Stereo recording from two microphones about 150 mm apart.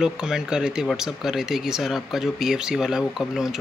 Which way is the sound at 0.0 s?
5° right (ahead or behind).